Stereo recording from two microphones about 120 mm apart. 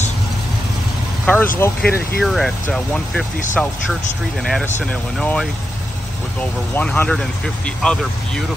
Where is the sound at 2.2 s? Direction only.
5° left (ahead or behind).